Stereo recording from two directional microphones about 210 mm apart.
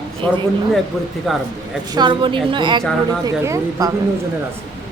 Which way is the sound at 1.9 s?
20° right (ahead or behind).